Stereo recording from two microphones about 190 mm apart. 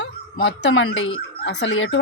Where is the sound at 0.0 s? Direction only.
70° left (ahead or behind).